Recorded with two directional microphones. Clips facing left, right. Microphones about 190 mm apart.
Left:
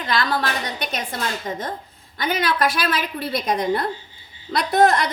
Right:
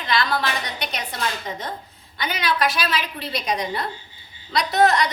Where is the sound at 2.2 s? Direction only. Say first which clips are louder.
Left 2 dB; 50° left (ahead or behind).